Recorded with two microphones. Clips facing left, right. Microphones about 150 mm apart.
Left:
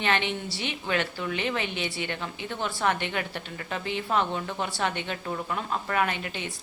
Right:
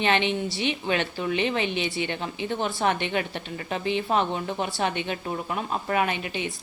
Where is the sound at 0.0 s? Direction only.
20° right (ahead or behind).